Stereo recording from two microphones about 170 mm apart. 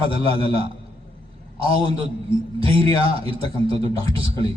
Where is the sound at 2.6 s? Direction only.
35° right (ahead or behind).